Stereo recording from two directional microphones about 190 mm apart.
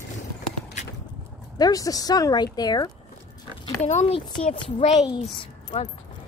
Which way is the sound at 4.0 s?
30° left (ahead or behind).